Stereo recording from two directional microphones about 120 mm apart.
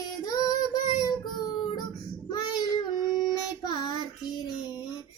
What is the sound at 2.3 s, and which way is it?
Child singing, 35° left (ahead or behind).